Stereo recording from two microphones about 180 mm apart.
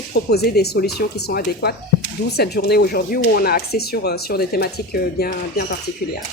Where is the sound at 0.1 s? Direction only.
65° left (ahead or behind).